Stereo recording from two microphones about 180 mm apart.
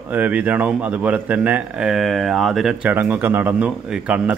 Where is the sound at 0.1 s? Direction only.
10° right (ahead or behind).